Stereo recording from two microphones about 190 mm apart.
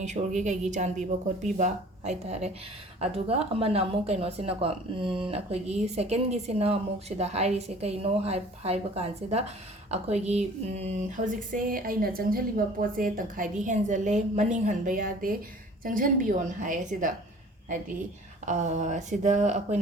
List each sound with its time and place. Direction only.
0.0 s a woman's voice: 40° right (ahead or behind)
11.5 s a woman's voice: 50° right (ahead or behind)
18.4 s a woman's voice: 40° right (ahead or behind)